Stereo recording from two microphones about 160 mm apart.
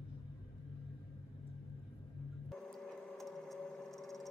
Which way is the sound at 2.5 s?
Centre (ahead or behind).